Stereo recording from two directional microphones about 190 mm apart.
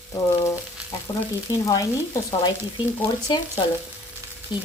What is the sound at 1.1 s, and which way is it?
Speech, 25° left (ahead or behind).